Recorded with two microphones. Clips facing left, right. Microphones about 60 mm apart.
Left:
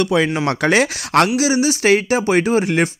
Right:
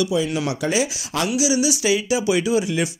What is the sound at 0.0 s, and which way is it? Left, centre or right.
Speech, left.